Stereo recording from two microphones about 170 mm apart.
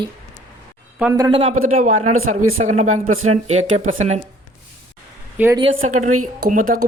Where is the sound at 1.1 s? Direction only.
20° right (ahead or behind).